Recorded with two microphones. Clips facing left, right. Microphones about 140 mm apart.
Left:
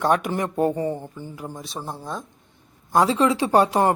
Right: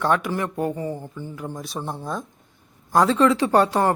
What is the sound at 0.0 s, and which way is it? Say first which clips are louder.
Speech: left 1 dB; 15° left (ahead or behind).